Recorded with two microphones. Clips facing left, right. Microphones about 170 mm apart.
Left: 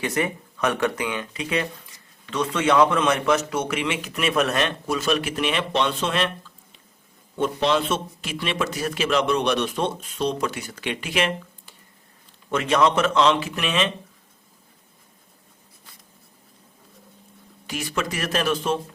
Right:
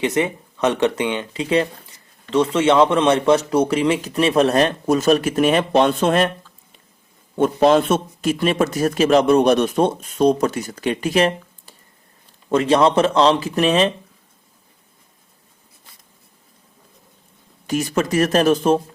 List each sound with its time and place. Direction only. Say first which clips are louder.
0.0 s a man's voice: right 5 dB; 20° right (ahead or behind); by 6.3 s 45° right (ahead or behind)
7.3 s a man's voice: right 7 dB; 45° right (ahead or behind)
17.7 s a man's voice: right 8 dB; 45° right (ahead or behind)